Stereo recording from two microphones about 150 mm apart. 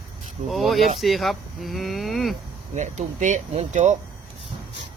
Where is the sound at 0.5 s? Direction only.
Centre (ahead or behind).